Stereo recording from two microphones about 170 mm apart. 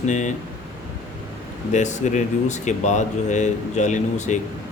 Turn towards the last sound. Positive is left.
turn(degrees=45)  # may be behind; listen again after turning